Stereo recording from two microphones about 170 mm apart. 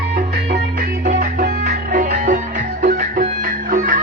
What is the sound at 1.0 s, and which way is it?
Music, 50° right (ahead or behind).